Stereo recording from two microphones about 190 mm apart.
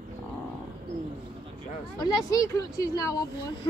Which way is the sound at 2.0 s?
20° left (ahead or behind).